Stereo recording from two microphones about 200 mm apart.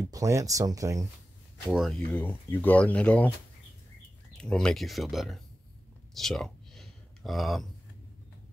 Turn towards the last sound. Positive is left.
turn(degrees=0)  # may be behind; listen again after turning